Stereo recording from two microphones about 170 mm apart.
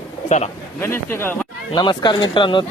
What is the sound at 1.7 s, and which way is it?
Speech, 25° left (ahead or behind).